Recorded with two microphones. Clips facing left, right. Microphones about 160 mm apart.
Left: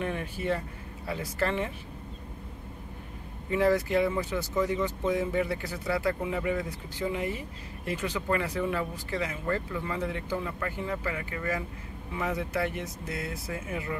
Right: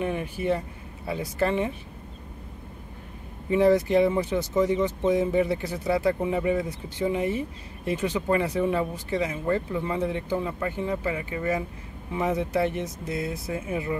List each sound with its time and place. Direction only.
0.0 s speech: 15° right (ahead or behind)
3.4 s speech: 20° right (ahead or behind)